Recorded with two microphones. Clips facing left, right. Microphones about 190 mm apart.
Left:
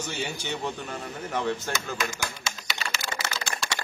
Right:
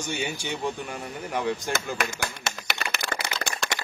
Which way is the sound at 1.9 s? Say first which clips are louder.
Right 1 dB; 60° right (ahead or behind).